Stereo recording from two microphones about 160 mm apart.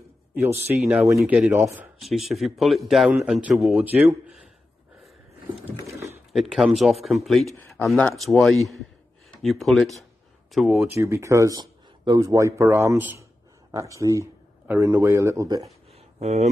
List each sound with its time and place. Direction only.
0.8 s speech: 15° right (ahead or behind)
6.3 s speech: centre (ahead or behind)
11.0 s speech: 15° right (ahead or behind)
16.2 s speech: 45° right (ahead or behind)